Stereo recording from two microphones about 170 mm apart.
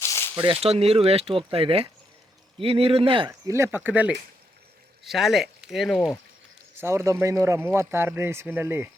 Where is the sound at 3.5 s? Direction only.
15° right (ahead or behind).